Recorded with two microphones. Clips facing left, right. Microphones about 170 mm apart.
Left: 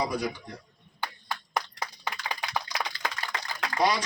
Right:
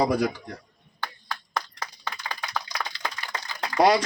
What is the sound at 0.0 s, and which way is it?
Speech, 55° right (ahead or behind).